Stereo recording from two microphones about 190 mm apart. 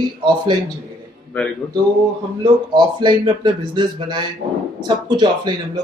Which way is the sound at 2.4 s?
25° right (ahead or behind).